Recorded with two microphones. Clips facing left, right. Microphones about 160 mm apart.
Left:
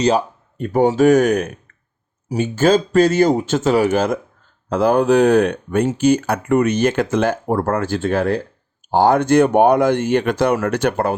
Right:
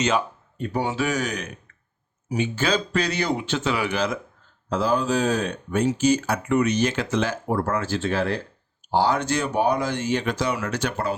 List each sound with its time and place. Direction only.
0.6 s speech: 45° left (ahead or behind)
4.7 s speech: 60° left (ahead or behind)